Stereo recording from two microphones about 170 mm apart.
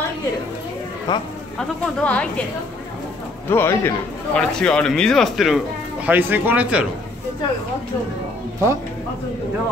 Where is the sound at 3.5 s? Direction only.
15° left (ahead or behind); by 6.8 s 10° right (ahead or behind).